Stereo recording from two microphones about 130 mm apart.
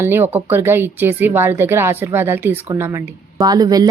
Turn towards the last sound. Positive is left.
turn(degrees=-30)  # may be behind; listen again after turning